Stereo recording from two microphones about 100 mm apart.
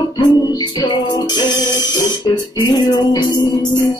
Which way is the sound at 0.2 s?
45° left (ahead or behind).